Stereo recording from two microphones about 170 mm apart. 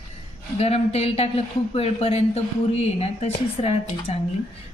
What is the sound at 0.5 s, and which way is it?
A woman's voice, 35° left (ahead or behind).